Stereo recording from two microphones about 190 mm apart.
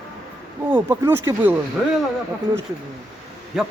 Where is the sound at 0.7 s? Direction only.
10° right (ahead or behind).